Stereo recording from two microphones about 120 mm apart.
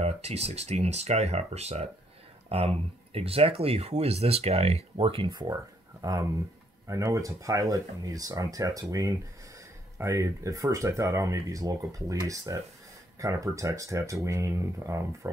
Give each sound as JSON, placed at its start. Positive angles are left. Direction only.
{"t": 0.0, "sound": "speech", "side_deg": -60}